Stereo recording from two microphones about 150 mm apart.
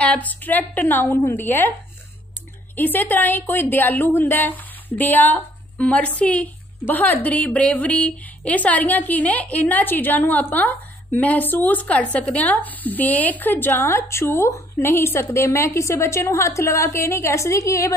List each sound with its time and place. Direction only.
0.0 s a woman's voice: 10° left (ahead or behind)
2.7 s a woman's voice: 10° left (ahead or behind)